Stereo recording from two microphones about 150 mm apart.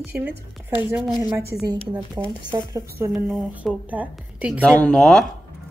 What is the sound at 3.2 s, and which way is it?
A woman's voice, centre (ahead or behind).